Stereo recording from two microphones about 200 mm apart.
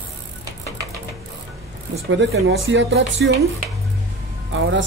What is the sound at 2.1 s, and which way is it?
Speech, 65° right (ahead or behind).